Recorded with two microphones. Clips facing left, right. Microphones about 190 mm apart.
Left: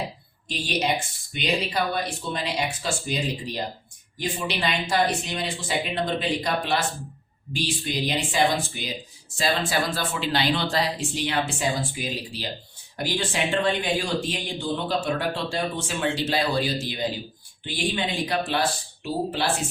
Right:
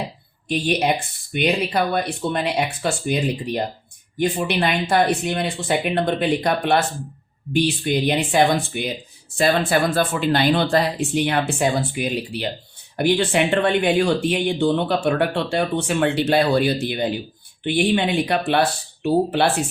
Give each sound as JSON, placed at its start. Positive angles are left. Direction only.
{"t": 0.4, "sound": "speech", "side_deg": -60}